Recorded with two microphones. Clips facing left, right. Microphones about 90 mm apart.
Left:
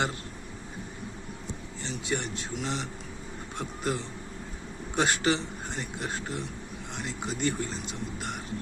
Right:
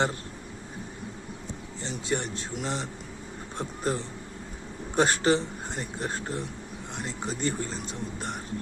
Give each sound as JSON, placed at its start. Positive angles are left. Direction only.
{"t": 1.8, "sound": "a man's voice", "side_deg": -35}